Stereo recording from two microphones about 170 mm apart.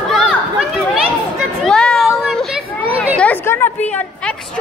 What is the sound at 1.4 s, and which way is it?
Chatter, centre (ahead or behind).